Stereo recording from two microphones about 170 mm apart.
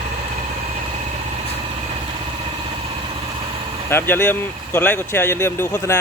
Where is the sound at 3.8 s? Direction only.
15° left (ahead or behind).